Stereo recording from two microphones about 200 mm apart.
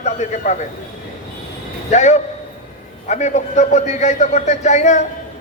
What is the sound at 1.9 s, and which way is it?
A man's voice, 35° left (ahead or behind).